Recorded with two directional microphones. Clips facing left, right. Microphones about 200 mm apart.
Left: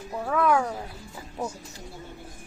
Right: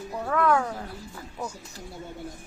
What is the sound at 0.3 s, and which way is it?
Speech, 10° left (ahead or behind).